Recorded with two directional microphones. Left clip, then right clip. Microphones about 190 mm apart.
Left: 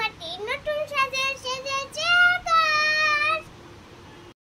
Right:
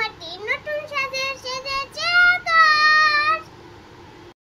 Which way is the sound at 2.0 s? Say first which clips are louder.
Right 3 dB; 10° left (ahead or behind).